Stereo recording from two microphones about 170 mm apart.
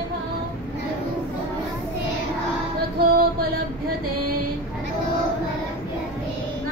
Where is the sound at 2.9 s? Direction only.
65° right (ahead or behind).